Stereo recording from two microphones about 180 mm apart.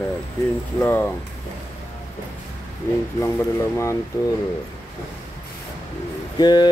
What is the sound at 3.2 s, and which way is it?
Speech, 15° left (ahead or behind).